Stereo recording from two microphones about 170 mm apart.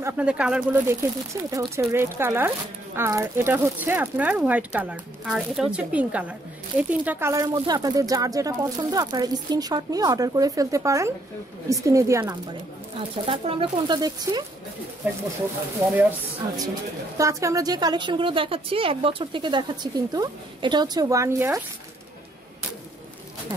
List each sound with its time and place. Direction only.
0.0 s speech: 5° right (ahead or behind)
1.3 s speech: 20° right (ahead or behind)
12.9 s speech: 30° right (ahead or behind)
15.0 s speech: 10° right (ahead or behind)
17.2 s speech: 20° right (ahead or behind)